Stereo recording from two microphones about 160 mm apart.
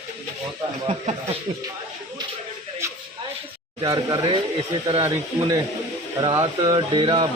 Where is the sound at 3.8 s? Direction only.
25° right (ahead or behind).